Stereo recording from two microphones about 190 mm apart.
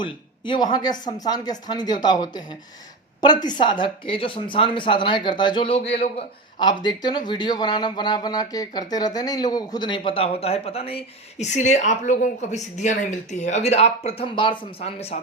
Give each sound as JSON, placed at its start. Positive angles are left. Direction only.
{"t": 0.0, "sound": "speech", "side_deg": 25}